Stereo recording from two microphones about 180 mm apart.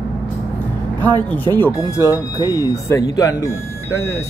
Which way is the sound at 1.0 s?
10° left (ahead or behind).